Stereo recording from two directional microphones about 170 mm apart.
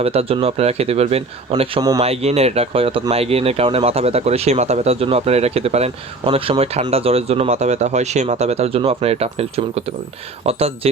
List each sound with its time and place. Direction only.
0.0 s speech: 35° right (ahead or behind)